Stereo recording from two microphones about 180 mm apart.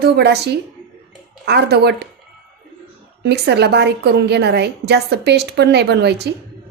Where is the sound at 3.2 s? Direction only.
65° right (ahead or behind).